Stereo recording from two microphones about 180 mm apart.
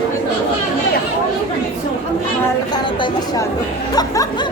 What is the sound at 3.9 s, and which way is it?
Music, 20° left (ahead or behind).